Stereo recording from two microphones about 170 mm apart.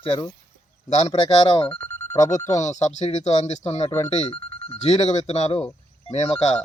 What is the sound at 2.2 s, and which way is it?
Speech, 45° left (ahead or behind).